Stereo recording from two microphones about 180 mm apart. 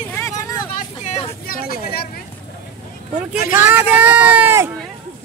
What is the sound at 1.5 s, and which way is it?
Vehicle, 55° left (ahead or behind).